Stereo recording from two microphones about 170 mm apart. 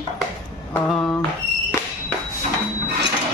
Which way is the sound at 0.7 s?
5° left (ahead or behind).